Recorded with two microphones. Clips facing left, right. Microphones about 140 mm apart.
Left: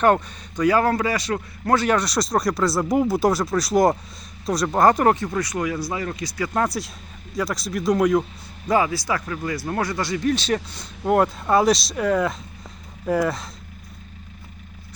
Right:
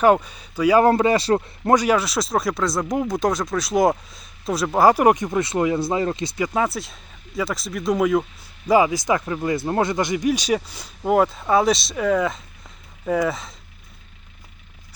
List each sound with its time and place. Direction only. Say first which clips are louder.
0.0 s speech: right 2 dB; 10° right (ahead or behind)
0.9 s speech: right 5 dB; 25° right (ahead or behind)
1.7 s speech: right 2 dB; 10° right (ahead or behind)
6.5 s speech: even; 5° right (ahead or behind)
8.6 s speech: right 4 dB; 10° right (ahead or behind)